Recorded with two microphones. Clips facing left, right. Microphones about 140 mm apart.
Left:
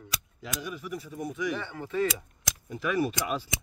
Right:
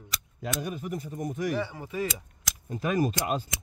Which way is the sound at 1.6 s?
10° right (ahead or behind).